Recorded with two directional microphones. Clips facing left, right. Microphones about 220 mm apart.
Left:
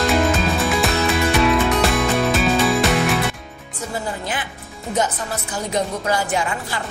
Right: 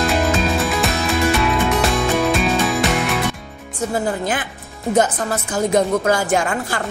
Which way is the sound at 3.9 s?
50° right (ahead or behind).